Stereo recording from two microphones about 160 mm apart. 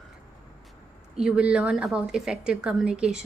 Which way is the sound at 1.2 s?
5° right (ahead or behind).